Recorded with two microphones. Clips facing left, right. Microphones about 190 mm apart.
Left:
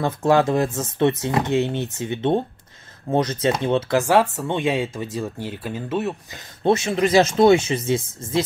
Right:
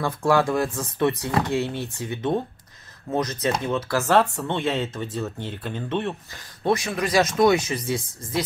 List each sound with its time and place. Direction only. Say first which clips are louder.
0.0 s speech: left 3 dB; 20° left (ahead or behind)
4.0 s speech: left 2 dB; 10° left (ahead or behind)
6.3 s speech: left 4 dB; 25° left (ahead or behind)